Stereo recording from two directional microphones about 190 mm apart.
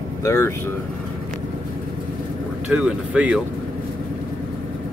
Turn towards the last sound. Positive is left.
turn(degrees=-5)  # may be behind; listen again after turning